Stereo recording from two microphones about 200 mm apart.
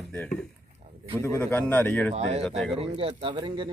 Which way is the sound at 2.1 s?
35° right (ahead or behind).